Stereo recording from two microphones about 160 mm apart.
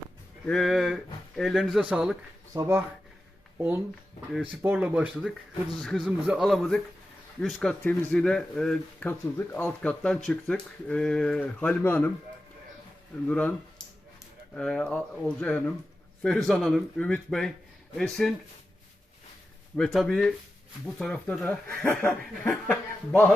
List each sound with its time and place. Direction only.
0.4 s speech: 5° left (ahead or behind)
2.5 s speech: 20° right (ahead or behind)
4.6 s speech: 10° right (ahead or behind); by 12.1 s 15° left (ahead or behind)
13.2 s speech: 10° left (ahead or behind)
14.5 s speech: 5° left (ahead or behind)
19.7 s speech: 5° left (ahead or behind)